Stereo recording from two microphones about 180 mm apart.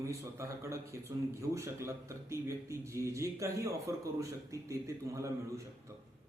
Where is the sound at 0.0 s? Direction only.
15° right (ahead or behind).